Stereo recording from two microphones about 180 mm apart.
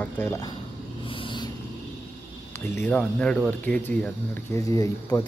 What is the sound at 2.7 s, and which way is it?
Speech, 10° left (ahead or behind).